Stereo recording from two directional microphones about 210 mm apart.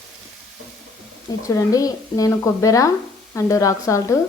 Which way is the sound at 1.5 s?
15° left (ahead or behind).